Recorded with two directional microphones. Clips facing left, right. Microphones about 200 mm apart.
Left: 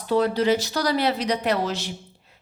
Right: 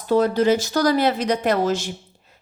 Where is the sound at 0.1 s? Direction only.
45° right (ahead or behind).